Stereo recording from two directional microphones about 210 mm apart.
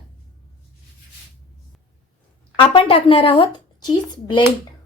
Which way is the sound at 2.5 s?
25° left (ahead or behind).